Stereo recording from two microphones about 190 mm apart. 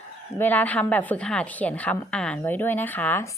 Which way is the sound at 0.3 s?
10° left (ahead or behind).